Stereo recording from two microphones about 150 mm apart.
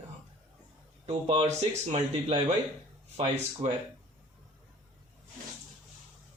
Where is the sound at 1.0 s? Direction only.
40° right (ahead or behind).